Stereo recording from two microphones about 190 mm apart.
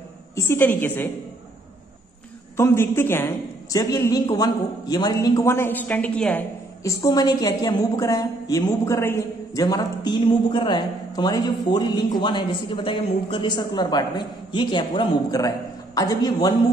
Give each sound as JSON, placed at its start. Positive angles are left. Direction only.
{"t": 0.4, "sound": "a woman's voice", "side_deg": 10}
{"t": 2.5, "sound": "a woman's voice", "side_deg": 15}
{"t": 6.8, "sound": "a woman's voice", "side_deg": 15}